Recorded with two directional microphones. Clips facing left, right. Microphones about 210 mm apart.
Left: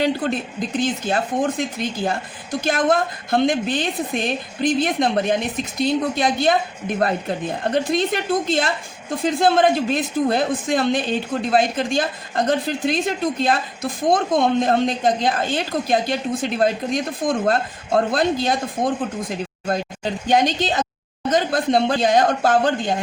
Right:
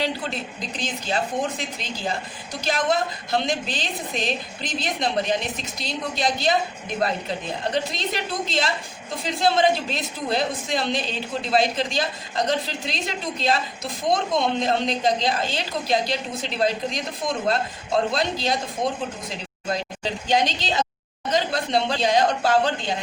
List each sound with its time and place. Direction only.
0.0 s a woman's voice: 50° left (ahead or behind)